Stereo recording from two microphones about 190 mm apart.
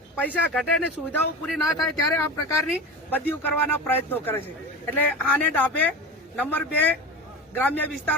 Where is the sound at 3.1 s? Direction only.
10° left (ahead or behind).